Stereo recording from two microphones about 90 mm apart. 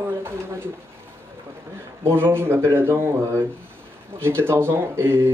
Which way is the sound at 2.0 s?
25° right (ahead or behind).